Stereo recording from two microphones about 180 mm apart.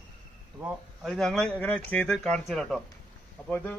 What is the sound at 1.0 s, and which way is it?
A man's voice, centre (ahead or behind).